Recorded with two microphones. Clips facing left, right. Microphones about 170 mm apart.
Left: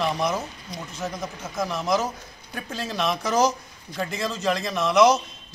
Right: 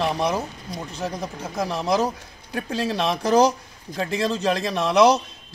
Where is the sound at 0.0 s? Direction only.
30° right (ahead or behind).